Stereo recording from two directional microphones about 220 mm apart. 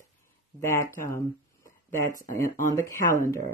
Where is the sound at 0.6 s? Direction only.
10° left (ahead or behind).